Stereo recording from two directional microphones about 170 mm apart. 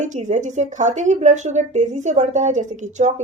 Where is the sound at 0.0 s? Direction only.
45° right (ahead or behind).